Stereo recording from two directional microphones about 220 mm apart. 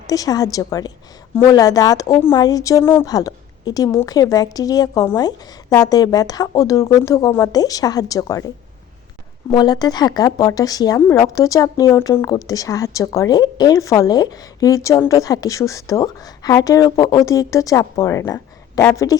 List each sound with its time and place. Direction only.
0.1 s speech: 15° left (ahead or behind)
9.5 s speech: 20° left (ahead or behind)